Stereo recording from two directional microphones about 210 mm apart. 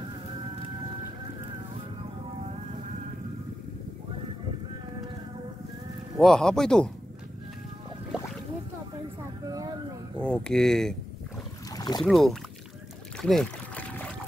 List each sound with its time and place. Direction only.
6.1 s speech: centre (ahead or behind)
9.5 s a sound: 15° right (ahead or behind)
10.2 s speech: 5° left (ahead or behind)
11.7 s boat: 20° left (ahead or behind)
12.0 s speech: centre (ahead or behind)
13.2 s boat: centre (ahead or behind)